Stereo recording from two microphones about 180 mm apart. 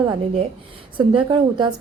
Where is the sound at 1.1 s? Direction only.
30° right (ahead or behind).